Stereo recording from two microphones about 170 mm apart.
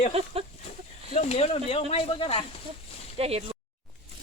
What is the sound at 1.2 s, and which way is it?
Speech, 40° left (ahead or behind).